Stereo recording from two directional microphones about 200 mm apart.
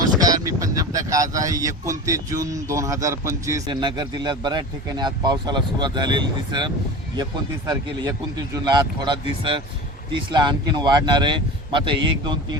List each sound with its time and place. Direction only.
0.2 s speech: 15° right (ahead or behind)